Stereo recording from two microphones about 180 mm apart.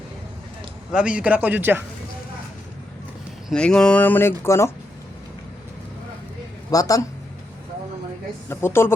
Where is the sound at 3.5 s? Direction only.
5° left (ahead or behind).